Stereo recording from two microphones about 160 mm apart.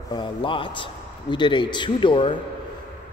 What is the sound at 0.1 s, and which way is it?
Speech, 30° left (ahead or behind).